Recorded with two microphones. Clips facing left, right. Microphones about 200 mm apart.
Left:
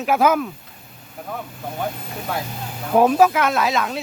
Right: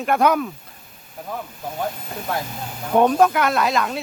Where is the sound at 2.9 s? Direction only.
5° left (ahead or behind).